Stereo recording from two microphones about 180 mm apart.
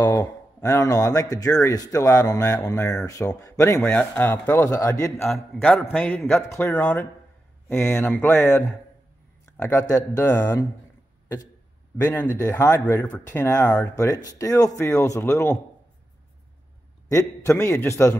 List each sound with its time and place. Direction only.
0.0 s speech: 20° left (ahead or behind)
5.2 s speech: centre (ahead or behind)
12.0 s speech: 15° left (ahead or behind)
17.1 s speech: 15° left (ahead or behind)